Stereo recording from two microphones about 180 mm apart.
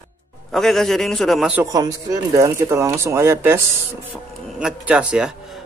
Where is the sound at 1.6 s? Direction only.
20° right (ahead or behind).